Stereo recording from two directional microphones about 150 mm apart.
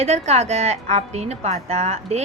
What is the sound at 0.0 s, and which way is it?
Speech, 45° right (ahead or behind).